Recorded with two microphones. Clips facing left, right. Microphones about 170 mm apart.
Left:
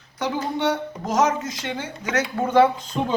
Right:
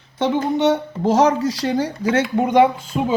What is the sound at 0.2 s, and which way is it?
A woman's voice, 25° right (ahead or behind).